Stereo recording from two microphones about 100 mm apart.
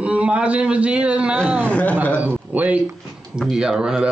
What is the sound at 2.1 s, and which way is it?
Speech, 20° right (ahead or behind).